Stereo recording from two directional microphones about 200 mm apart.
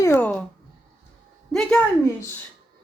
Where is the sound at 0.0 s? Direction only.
15° left (ahead or behind).